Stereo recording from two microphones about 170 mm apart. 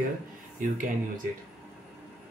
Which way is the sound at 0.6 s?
50° right (ahead or behind).